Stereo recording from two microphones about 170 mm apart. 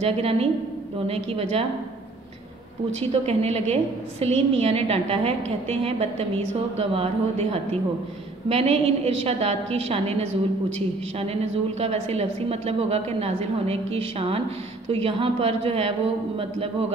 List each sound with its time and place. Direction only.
0.0 s a woman's voice: 35° right (ahead or behind)
3.0 s a woman's voice: 35° right (ahead or behind)
11.8 s a woman's voice: 35° right (ahead or behind)